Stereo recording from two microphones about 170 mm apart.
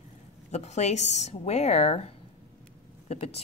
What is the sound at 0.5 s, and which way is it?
Speech, 40° left (ahead or behind).